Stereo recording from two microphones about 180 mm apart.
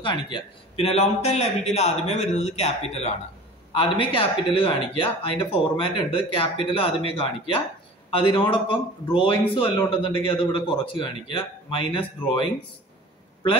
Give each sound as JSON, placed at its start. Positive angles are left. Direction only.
{"t": 0.0, "sound": "a man's voice", "side_deg": 25}